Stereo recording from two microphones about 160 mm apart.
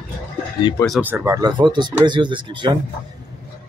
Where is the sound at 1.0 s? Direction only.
15° right (ahead or behind).